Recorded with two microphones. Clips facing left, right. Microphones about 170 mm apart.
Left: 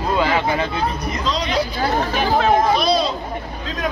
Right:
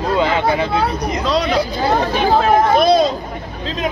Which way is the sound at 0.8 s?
70° right (ahead or behind).